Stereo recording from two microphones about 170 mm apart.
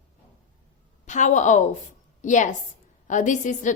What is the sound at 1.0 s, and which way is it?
A woman's voice, 45° left (ahead or behind).